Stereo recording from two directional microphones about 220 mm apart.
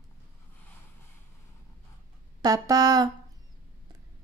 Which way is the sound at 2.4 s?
15° right (ahead or behind).